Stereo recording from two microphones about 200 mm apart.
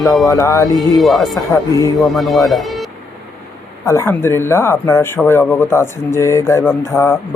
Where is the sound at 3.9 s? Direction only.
10° left (ahead or behind).